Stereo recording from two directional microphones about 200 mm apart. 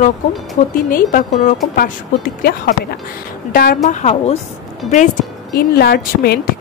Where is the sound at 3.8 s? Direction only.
30° left (ahead or behind).